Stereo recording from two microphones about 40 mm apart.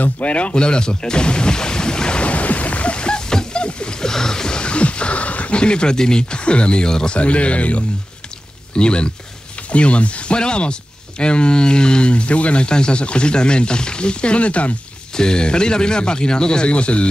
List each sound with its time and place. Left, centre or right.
0.0 s speech: left
5.6 s speech: left
7.2 s speech: left
15.1 s speech: centre